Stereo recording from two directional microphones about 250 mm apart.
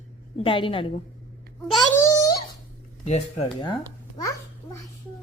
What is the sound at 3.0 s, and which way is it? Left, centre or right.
Speech, left.